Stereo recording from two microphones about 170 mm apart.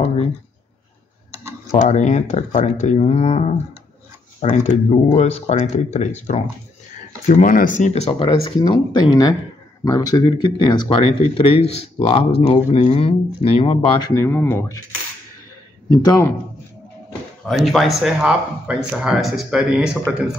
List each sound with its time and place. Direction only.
0.0 s a sound: 35° left (ahead or behind)
1.9 s speech: 45° left (ahead or behind)
14.1 s speech: 15° left (ahead or behind)
15.9 s speech: 20° left (ahead or behind)
17.6 s speech: centre (ahead or behind)